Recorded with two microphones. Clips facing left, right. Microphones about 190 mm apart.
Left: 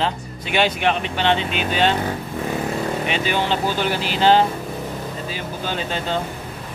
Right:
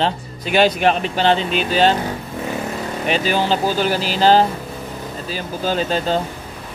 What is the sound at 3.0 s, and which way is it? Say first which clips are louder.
Speech: right 7 dB; 40° right (ahead or behind).